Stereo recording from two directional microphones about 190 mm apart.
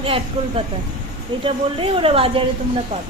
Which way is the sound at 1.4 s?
30° right (ahead or behind).